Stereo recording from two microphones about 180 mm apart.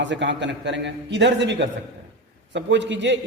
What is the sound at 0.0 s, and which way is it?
Speech, 90° right.